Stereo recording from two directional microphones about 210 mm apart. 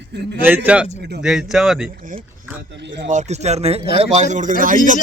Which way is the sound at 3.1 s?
30° right (ahead or behind).